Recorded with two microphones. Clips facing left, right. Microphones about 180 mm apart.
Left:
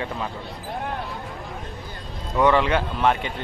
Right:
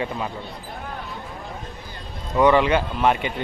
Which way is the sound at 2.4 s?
5° right (ahead or behind).